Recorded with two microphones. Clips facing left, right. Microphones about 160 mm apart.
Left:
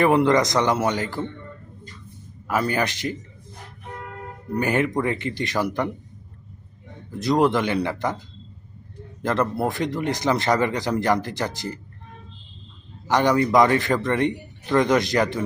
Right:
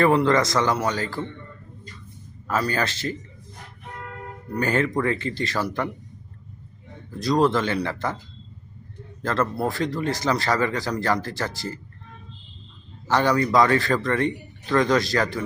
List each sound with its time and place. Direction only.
0.0 s speech: 15° left (ahead or behind)
2.5 s speech: 15° left (ahead or behind)
4.5 s speech: 15° left (ahead or behind)
7.1 s speech: 20° left (ahead or behind)
9.2 s speech: 20° left (ahead or behind)
13.1 s speech: 15° left (ahead or behind)